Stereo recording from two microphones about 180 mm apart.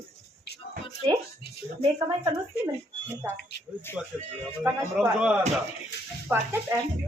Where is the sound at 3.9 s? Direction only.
10° left (ahead or behind).